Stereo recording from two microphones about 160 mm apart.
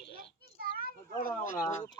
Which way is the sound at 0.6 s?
65° right (ahead or behind).